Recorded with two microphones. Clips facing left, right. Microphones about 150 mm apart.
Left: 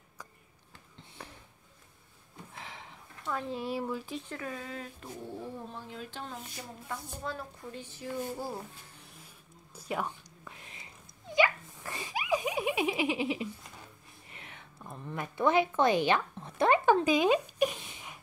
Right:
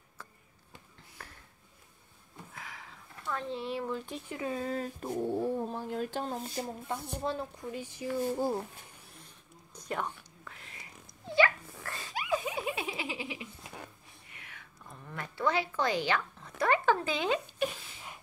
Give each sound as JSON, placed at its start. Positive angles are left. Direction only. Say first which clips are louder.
{"t": 2.6, "sound": "a sound", "louder": "left 1 dB", "side_deg": 25}
{"t": 3.3, "sound": "speech", "louder": "left 1 dB", "side_deg": 10}
{"t": 4.3, "sound": "speech", "louder": "right 7 dB", "side_deg": -20}
{"t": 4.6, "sound": "speech", "louder": "right 7 dB", "side_deg": -40}
{"t": 7.7, "sound": "speech", "louder": "right 3 dB", "side_deg": -10}
{"t": 9.1, "sound": "whispering", "louder": "even", "side_deg": 5}
{"t": 11.3, "sound": "giggle", "louder": "right 1 dB", "side_deg": 15}
{"t": 14.3, "sound": "a sound", "louder": "left 4 dB", "side_deg": 25}